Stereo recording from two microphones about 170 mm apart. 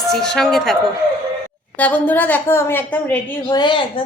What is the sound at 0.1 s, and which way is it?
A woman's voice, 5° left (ahead or behind).